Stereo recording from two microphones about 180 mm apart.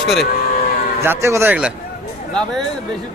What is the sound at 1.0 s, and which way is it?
Speech, 15° right (ahead or behind).